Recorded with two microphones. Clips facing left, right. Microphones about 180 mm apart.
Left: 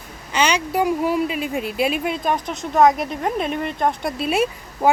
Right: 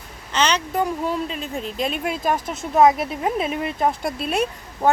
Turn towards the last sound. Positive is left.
turn(degrees=5)  # may be behind; listen again after turning